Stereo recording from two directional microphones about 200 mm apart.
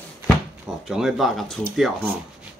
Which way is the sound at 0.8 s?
Centre (ahead or behind).